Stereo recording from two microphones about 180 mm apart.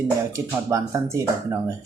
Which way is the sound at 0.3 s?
15° right (ahead or behind).